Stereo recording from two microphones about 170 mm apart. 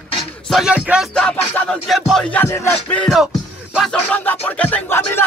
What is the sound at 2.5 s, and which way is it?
Music, 15° left (ahead or behind).